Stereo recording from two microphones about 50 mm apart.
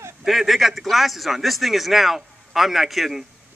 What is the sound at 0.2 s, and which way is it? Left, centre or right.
Speech, centre.